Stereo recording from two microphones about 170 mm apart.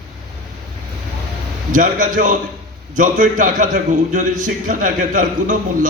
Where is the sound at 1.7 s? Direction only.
50° right (ahead or behind).